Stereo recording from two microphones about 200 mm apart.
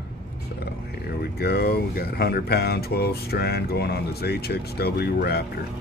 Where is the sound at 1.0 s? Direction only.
50° left (ahead or behind).